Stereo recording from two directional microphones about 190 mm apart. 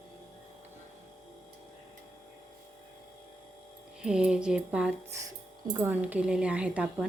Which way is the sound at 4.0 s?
5° right (ahead or behind).